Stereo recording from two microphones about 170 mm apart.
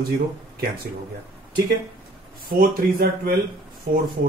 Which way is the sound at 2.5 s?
60° right (ahead or behind).